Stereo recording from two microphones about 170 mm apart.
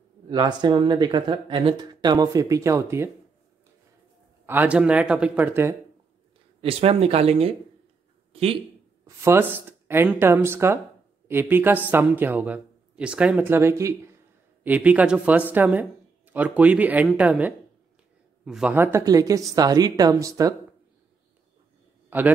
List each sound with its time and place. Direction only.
0.3 s speech: 25° right (ahead or behind)
4.5 s speech: 10° right (ahead or behind)
6.6 s speech: 35° right (ahead or behind)
9.0 s speech: 15° right (ahead or behind)
22.1 s a man's voice: 10° right (ahead or behind)